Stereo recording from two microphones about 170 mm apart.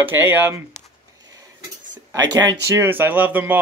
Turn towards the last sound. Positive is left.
turn(degrees=-10)  # may be behind; listen again after turning